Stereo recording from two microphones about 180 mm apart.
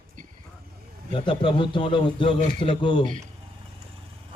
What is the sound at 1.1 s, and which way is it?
A man's voice, 30° left (ahead or behind).